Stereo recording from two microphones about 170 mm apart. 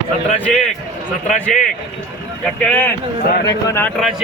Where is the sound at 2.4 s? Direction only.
10° left (ahead or behind).